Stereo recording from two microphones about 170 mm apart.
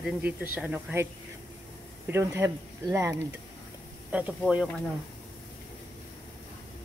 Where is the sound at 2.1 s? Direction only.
15° right (ahead or behind).